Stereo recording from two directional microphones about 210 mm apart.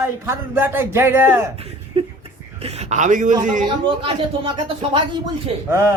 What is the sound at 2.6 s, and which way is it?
A man's voice, 30° right (ahead or behind).